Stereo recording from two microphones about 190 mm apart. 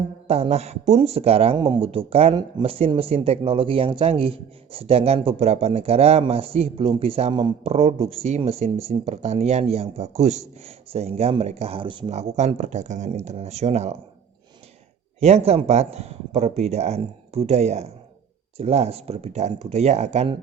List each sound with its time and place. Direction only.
0.3 s speech: 30° right (ahead or behind)
15.2 s speech: 35° right (ahead or behind)